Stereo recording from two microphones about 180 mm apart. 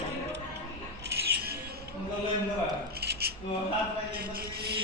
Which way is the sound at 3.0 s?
60° right (ahead or behind).